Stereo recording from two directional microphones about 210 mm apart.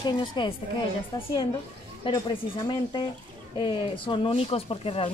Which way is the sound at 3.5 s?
25° left (ahead or behind).